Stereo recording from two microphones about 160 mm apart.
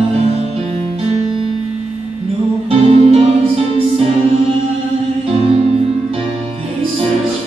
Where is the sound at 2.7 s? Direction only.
40° right (ahead or behind).